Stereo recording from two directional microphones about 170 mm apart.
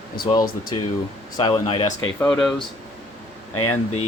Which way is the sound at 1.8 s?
10° left (ahead or behind).